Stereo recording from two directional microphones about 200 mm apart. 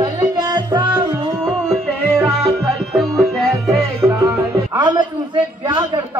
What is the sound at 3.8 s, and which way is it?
Music, 15° right (ahead or behind).